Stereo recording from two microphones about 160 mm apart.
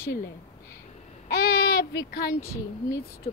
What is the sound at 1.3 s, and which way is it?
Babbling, 80° left.